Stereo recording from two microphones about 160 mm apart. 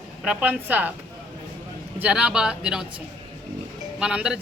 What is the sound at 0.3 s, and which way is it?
Speech, 10° right (ahead or behind).